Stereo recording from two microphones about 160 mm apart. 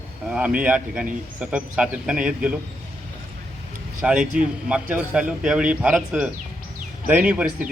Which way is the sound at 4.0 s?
5° right (ahead or behind).